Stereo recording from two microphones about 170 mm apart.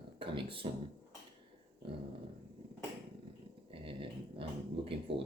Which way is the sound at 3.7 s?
30° right (ahead or behind).